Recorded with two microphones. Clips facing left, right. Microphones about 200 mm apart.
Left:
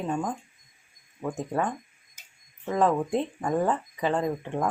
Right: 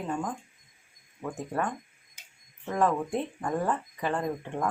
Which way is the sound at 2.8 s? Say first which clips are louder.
Left 3 dB; 20° left (ahead or behind).